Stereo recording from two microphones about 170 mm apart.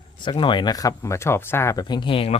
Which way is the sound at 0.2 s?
30° left (ahead or behind).